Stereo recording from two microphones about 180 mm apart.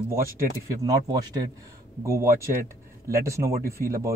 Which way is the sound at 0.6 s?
15° right (ahead or behind).